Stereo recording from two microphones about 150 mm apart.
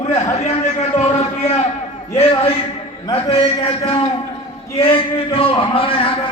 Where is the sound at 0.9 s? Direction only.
45° left (ahead or behind).